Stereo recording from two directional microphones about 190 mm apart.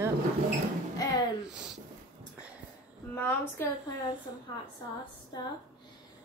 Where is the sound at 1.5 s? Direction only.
5° right (ahead or behind).